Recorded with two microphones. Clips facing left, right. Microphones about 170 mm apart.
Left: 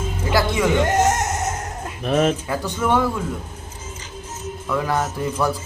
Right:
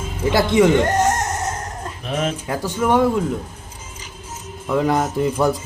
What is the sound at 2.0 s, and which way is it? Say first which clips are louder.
Speech: left 5 dB; 50° left (ahead or behind).